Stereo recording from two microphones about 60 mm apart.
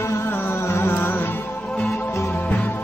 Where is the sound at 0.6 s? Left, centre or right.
Left.